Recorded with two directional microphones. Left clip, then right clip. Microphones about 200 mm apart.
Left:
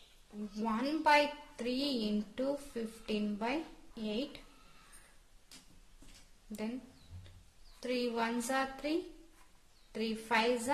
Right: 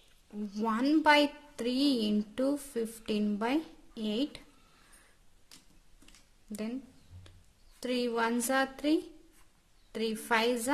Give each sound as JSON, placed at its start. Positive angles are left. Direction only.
{"t": 0.6, "sound": "a woman's voice", "side_deg": -40}
{"t": 7.8, "sound": "a woman's voice", "side_deg": -40}